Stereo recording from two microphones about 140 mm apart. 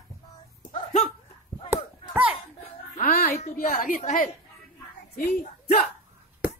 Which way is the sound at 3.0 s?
80° left.